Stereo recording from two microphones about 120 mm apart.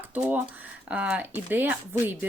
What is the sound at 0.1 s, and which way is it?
Speech, 15° right (ahead or behind).